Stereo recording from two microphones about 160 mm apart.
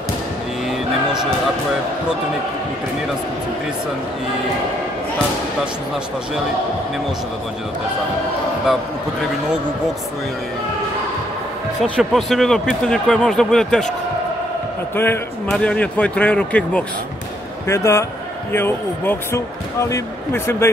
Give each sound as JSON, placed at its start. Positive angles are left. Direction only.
{"t": 12.0, "sound": "speech", "side_deg": 0}
{"t": 15.0, "sound": "speech", "side_deg": 10}